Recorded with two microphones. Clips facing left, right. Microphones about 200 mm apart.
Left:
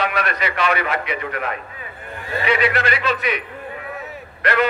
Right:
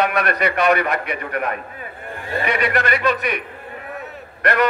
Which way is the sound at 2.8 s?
55° right (ahead or behind).